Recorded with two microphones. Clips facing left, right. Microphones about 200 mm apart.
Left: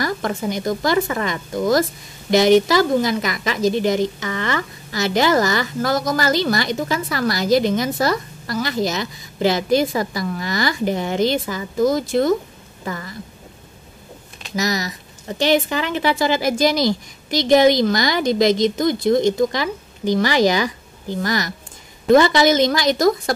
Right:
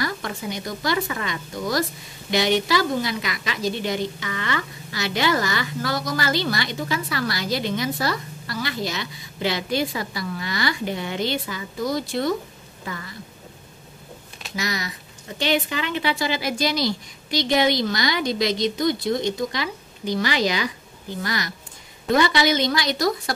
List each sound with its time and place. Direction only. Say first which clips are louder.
0.0 s a woman's voice: left 6 dB; 45° left (ahead or behind)
14.5 s a woman's voice: left 6 dB; 40° left (ahead or behind)